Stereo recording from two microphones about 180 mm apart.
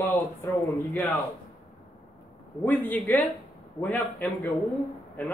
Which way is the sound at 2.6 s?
10° left (ahead or behind).